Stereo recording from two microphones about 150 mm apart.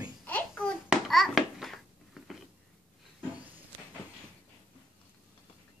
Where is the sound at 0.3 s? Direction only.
10° left (ahead or behind).